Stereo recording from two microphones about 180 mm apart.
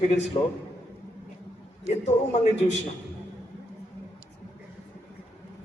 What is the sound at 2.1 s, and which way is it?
Speech, 40° left (ahead or behind).